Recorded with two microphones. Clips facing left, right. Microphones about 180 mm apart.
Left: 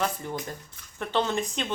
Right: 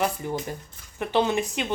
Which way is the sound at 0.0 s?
15° right (ahead or behind).